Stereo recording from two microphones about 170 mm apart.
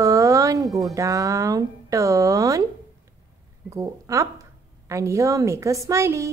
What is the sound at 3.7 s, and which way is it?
A woman's voice, 20° right (ahead or behind).